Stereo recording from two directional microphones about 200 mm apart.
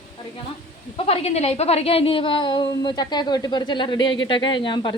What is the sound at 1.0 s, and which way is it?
A woman's voice, 30° left (ahead or behind).